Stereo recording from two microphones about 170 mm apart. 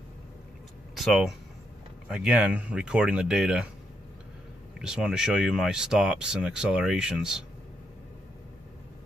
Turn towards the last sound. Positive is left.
turn(degrees=-5)  # may be behind; listen again after turning